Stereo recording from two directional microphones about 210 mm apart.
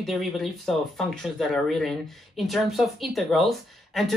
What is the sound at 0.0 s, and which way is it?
Speech, centre (ahead or behind).